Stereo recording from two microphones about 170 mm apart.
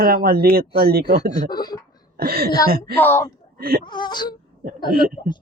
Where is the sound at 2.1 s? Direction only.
65° right (ahead or behind).